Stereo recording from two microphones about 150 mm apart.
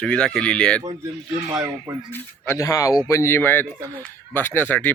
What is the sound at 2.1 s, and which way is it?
A man's voice, 20° left (ahead or behind).